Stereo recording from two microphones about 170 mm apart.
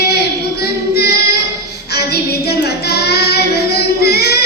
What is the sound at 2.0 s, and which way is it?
Child singing, 70° left (ahead or behind).